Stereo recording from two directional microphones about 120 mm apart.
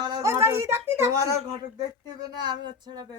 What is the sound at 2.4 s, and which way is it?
Speech, 40° right (ahead or behind).